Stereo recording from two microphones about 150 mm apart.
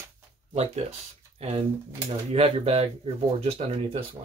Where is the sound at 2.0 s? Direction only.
40° right (ahead or behind).